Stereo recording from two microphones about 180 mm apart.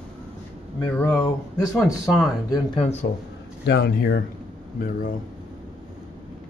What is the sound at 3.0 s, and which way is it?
Speech, 75° left (ahead or behind).